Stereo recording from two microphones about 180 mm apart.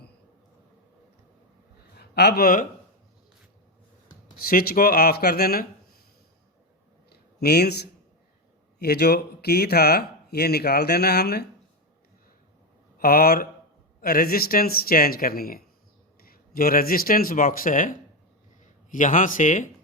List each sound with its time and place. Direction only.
2.0 s speech: 65° left (ahead or behind)
4.4 s speech: 55° left (ahead or behind)
7.1 s a sound: 60° left (ahead or behind)
8.8 s speech: 60° left (ahead or behind)
13.0 s speech: 55° left (ahead or behind)